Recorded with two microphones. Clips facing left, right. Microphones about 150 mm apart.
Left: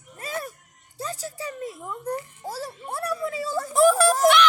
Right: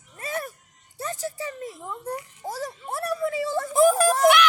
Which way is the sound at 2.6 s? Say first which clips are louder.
Right 1 dB; 20° right (ahead or behind).